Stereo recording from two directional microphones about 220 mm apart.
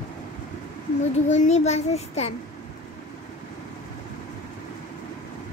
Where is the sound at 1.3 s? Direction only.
30° left (ahead or behind).